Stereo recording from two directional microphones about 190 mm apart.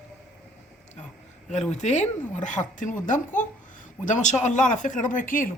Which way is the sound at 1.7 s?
40° left (ahead or behind).